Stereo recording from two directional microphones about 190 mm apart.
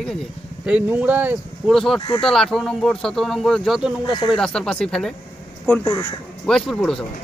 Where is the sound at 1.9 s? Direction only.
25° left (ahead or behind).